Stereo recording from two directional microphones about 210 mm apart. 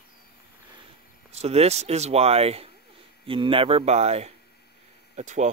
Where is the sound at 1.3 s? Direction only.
30° right (ahead or behind).